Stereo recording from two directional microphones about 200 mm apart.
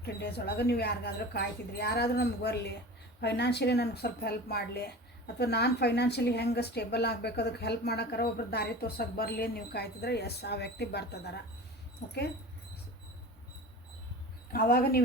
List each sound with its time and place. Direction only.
0.0 s speech: 55° left (ahead or behind)
14.5 s speech: 45° left (ahead or behind)